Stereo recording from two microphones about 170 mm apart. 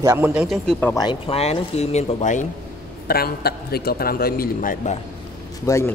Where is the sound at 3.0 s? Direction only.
65° left (ahead or behind).